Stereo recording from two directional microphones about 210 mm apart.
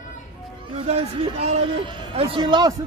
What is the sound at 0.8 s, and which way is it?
Speech, 30° right (ahead or behind).